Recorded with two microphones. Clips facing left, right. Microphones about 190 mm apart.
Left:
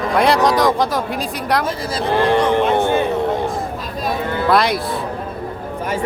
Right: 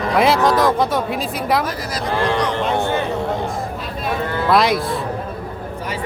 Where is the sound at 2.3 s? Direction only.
55° left (ahead or behind).